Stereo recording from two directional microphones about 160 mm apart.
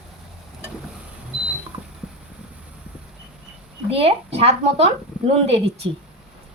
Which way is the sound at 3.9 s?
35° right (ahead or behind).